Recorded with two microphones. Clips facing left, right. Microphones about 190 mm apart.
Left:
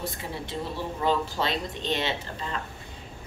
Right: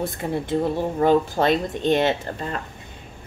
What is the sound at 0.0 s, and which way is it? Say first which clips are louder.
A woman's voice: right 9 dB; 50° right (ahead or behind).